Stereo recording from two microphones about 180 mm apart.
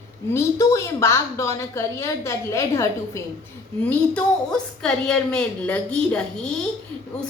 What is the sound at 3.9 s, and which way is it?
A woman's voice, 5° left (ahead or behind).